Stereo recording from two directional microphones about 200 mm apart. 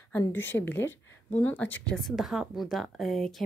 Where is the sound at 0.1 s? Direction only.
10° left (ahead or behind).